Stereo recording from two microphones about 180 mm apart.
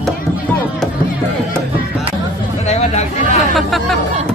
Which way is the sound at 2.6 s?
40° left (ahead or behind).